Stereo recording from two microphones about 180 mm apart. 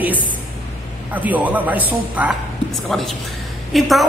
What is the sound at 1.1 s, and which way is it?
Speech, 10° right (ahead or behind).